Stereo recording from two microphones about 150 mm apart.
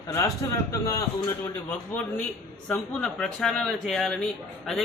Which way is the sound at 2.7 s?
5° left (ahead or behind).